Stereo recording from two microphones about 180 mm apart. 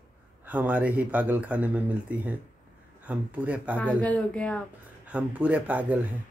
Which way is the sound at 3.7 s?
10° left (ahead or behind).